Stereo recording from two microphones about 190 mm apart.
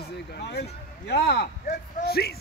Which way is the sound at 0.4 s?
60° left (ahead or behind).